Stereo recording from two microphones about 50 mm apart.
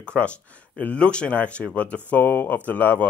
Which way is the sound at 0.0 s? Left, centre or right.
Left.